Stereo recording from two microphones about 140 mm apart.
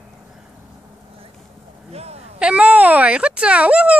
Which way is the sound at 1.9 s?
50° right (ahead or behind).